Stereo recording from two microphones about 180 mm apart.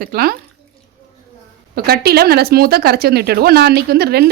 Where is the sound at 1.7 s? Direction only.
60° right (ahead or behind).